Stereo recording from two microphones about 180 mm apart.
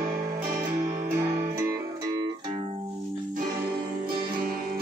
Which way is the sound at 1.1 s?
15° right (ahead or behind).